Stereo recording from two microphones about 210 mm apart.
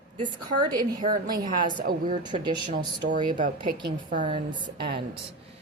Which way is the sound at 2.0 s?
20° right (ahead or behind).